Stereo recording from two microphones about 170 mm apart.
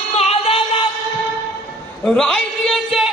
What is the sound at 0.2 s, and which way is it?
Music, 35° left (ahead or behind).